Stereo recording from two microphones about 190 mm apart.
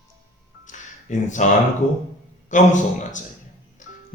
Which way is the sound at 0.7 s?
40° left (ahead or behind).